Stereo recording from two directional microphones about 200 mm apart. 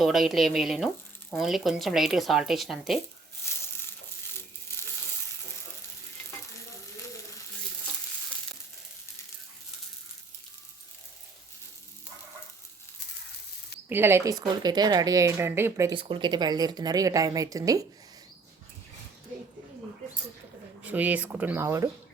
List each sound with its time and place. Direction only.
0.0 s speech: centre (ahead or behind)
3.6 s crushing: 10° left (ahead or behind)
13.9 s speech: 10° right (ahead or behind)
20.8 s speech: 10° right (ahead or behind)